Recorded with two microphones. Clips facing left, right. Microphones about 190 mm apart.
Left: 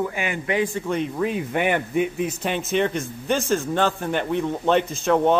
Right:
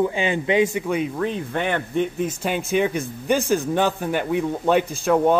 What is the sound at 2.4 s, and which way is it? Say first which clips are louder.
Speech: right 1 dB; 5° right (ahead or behind).